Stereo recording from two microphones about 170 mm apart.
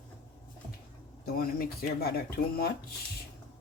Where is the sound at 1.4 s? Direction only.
65° left (ahead or behind).